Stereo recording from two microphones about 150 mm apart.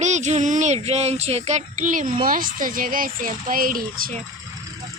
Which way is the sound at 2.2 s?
70° right (ahead or behind).